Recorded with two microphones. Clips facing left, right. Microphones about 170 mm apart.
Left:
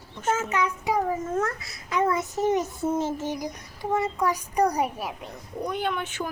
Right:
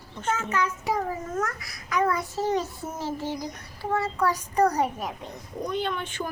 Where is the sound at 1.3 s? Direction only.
25° left (ahead or behind).